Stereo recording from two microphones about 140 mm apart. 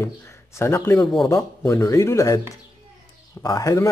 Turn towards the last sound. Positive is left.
turn(degrees=25)  # may be behind; listen again after turning